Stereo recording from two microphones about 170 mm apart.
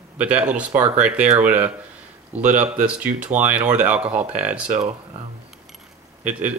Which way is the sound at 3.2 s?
10° right (ahead or behind).